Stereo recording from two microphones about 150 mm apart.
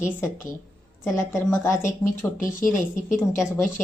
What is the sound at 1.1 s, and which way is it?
Speech, 15° left (ahead or behind).